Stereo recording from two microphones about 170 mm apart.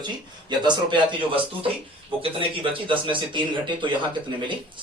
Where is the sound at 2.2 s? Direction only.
30° right (ahead or behind).